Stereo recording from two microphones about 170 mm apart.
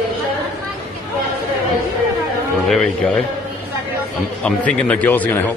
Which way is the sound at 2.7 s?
5° left (ahead or behind).